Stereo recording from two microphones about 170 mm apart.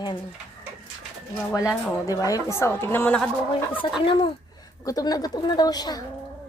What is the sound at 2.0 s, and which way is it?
A woman's voice, 20° left (ahead or behind).